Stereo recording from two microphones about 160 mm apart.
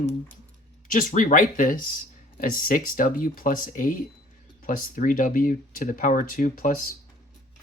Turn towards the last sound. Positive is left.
turn(degrees=55)  # may be behind; listen again after turning